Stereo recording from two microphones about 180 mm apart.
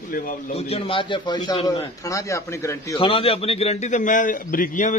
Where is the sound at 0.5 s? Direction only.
30° left (ahead or behind); by 2.9 s 15° left (ahead or behind).